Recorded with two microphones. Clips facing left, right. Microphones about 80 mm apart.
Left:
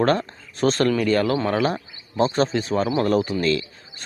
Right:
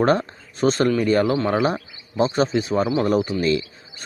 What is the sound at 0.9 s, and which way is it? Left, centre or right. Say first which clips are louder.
Speech: right 1 dB; centre.